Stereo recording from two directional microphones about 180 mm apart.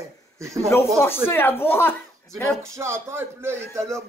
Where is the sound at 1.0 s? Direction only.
10° left (ahead or behind).